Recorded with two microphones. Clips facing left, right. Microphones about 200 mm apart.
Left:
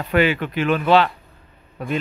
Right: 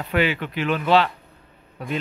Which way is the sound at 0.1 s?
50° left (ahead or behind).